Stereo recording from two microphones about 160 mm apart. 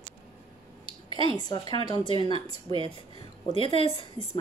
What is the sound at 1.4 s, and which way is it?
Speech, 25° left (ahead or behind).